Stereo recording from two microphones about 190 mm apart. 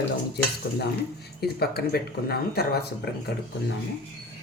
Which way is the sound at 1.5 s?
55° left (ahead or behind).